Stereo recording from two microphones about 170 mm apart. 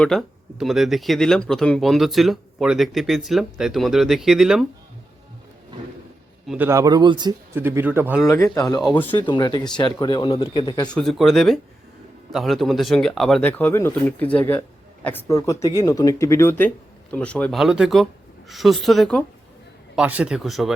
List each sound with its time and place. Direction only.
0.0 s speech: centre (ahead or behind)
6.5 s speech: 15° right (ahead or behind)
7.5 s speech: 15° right (ahead or behind)
8.2 s speech: 20° left (ahead or behind)
10.9 s speech: centre (ahead or behind)
13.5 s speech: 10° left (ahead or behind)